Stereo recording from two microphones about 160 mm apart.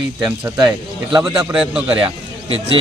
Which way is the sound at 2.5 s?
35° right (ahead or behind).